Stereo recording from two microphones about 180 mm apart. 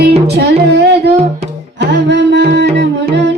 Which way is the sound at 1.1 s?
35° right (ahead or behind).